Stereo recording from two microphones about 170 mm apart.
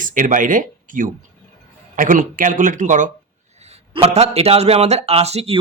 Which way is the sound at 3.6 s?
35° right (ahead or behind).